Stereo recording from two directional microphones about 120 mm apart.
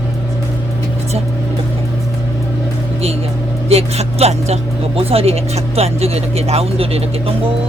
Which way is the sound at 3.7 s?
60° right (ahead or behind).